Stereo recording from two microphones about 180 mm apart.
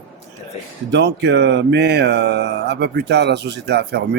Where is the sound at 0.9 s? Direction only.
70° right (ahead or behind).